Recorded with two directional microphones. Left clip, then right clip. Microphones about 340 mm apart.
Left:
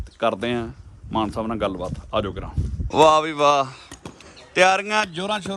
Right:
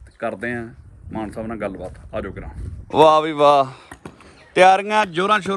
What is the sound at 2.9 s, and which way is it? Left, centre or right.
Speech, centre.